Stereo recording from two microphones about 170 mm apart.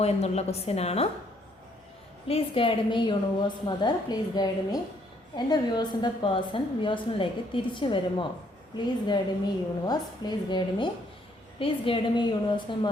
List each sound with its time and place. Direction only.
0.0 s a woman's voice: 40° left (ahead or behind)
2.2 s a woman's voice: 35° left (ahead or behind)